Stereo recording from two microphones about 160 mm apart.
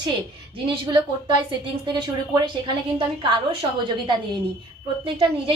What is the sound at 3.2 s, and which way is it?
Speech, 30° right (ahead or behind).